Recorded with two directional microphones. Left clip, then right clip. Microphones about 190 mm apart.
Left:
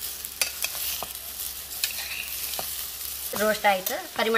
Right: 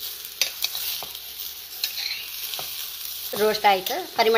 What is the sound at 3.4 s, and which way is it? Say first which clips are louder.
Stir: right 3 dB; 35° right (ahead or behind).